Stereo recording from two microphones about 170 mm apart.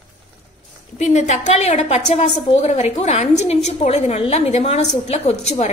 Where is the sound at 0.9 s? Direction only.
45° left (ahead or behind).